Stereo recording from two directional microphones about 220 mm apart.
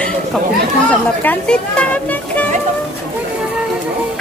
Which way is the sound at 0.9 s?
5° left (ahead or behind).